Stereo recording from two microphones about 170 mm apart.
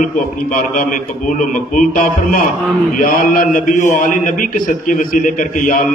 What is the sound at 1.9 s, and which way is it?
A man's voice, 55° left (ahead or behind).